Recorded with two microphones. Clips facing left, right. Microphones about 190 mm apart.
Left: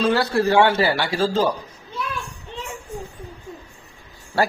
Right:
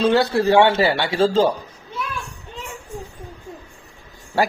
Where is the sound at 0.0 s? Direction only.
25° right (ahead or behind).